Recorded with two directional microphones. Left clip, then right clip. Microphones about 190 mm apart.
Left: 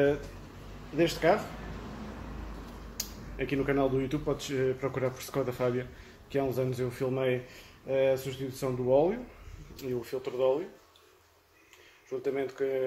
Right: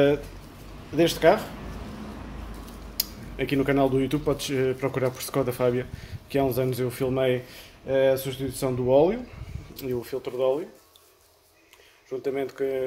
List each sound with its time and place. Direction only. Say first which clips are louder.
0.9 s speech: right 6 dB; 50° right (ahead or behind)
3.0 s speech: right 6 dB; 50° right (ahead or behind)
12.1 s speech: right 3 dB; 50° right (ahead or behind)